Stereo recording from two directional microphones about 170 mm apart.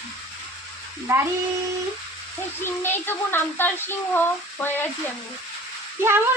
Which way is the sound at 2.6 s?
15° left (ahead or behind).